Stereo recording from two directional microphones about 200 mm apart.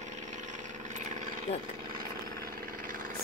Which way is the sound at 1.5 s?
30° left (ahead or behind).